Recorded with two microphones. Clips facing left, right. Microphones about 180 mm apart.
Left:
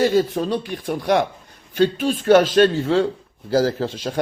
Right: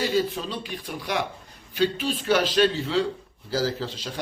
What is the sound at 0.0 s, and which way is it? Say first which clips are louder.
A man's voice: left 7 dB; 50° left (ahead or behind).